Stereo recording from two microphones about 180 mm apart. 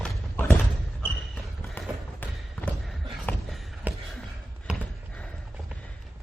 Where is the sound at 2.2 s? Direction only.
10° left (ahead or behind).